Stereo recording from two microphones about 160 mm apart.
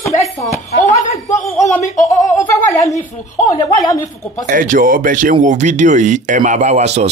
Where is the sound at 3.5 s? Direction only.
20° left (ahead or behind).